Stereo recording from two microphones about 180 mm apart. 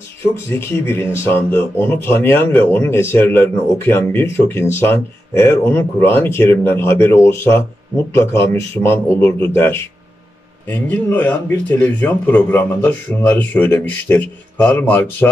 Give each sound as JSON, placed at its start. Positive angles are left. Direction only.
{"t": 0.5, "sound": "speech", "side_deg": 10}